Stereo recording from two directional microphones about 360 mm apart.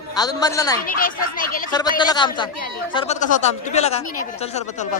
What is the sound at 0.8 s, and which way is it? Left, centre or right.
Speech, left.